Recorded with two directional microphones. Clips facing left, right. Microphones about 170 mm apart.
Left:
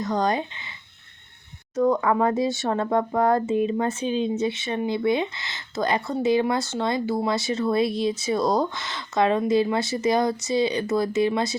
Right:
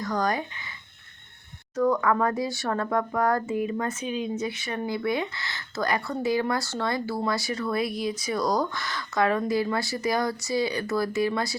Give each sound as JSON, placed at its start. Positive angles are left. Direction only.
{"t": 0.0, "sound": "speech", "side_deg": 25}
{"t": 1.7, "sound": "speech", "side_deg": 20}